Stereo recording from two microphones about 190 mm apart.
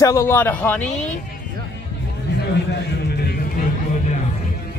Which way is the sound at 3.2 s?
45° left (ahead or behind).